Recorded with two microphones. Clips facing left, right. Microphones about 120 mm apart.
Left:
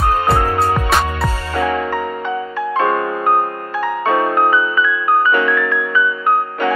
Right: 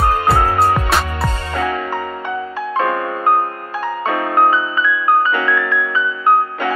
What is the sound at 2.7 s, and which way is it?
Music, 15° right (ahead or behind).